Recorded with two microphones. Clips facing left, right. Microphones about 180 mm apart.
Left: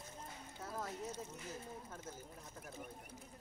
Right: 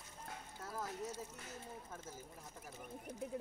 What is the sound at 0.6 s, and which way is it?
Speech, centre (ahead or behind).